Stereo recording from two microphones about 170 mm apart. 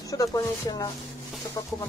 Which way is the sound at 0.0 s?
20° left (ahead or behind).